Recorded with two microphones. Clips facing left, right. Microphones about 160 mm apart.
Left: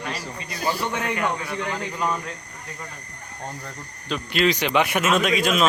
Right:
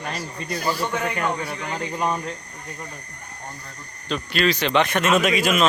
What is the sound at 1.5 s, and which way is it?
Speech, 25° right (ahead or behind).